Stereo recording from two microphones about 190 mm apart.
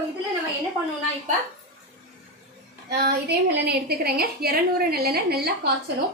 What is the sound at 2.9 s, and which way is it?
A woman's voice, 60° right (ahead or behind).